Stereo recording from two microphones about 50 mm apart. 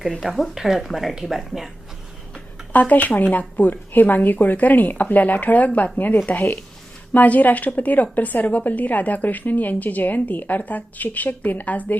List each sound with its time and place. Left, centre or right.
0.1 s speech: centre
2.7 s a woman's voice: left